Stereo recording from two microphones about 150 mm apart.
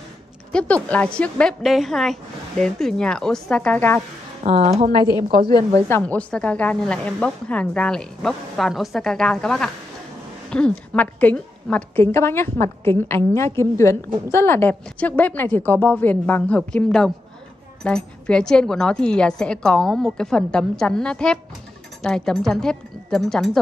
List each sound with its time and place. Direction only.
0.5 s a woman's voice: 5° left (ahead or behind)
4.4 s speech: 50° right (ahead or behind)
5.9 s a woman's voice: 10° left (ahead or behind)